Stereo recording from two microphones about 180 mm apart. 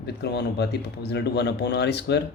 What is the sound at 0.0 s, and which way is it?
Speech, 65° left (ahead or behind).